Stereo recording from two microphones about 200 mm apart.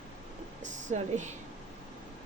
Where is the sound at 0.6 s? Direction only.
35° right (ahead or behind).